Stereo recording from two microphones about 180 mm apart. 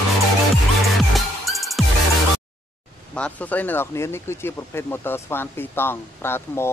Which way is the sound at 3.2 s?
5° left (ahead or behind).